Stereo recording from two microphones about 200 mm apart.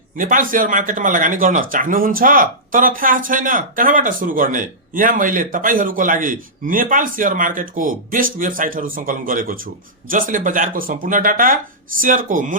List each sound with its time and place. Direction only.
0.2 s speech: 40° right (ahead or behind)